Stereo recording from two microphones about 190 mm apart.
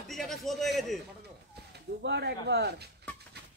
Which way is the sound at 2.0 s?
65° right (ahead or behind).